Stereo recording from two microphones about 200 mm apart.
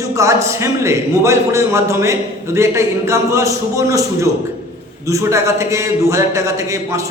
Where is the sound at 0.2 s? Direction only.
15° right (ahead or behind).